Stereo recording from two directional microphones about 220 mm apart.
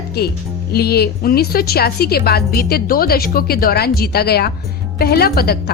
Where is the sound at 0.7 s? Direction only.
45° left (ahead or behind).